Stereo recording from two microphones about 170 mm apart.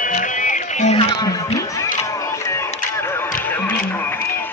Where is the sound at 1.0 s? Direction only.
25° left (ahead or behind).